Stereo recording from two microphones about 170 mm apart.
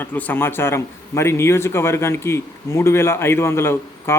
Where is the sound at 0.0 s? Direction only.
10° left (ahead or behind).